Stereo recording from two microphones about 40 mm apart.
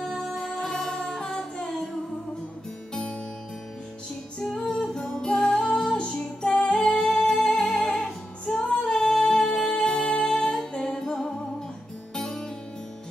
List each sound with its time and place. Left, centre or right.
0.0 s music: centre
0.3 s music: centre
2.9 s music: centre
4.6 s music: centre
12.2 s music: centre